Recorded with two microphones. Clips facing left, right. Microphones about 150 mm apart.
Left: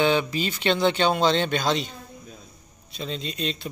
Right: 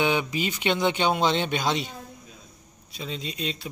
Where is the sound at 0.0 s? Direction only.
15° right (ahead or behind).